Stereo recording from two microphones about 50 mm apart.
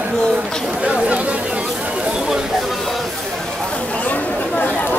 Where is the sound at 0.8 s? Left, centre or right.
Right.